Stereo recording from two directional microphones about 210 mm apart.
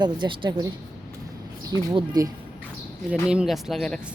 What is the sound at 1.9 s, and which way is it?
Speech, 15° right (ahead or behind).